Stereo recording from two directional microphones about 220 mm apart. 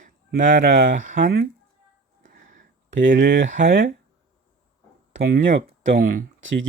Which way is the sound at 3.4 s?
35° right (ahead or behind).